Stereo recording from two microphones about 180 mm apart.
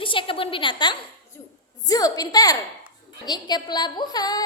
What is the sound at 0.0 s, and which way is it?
A woman's voice, 30° left (ahead or behind).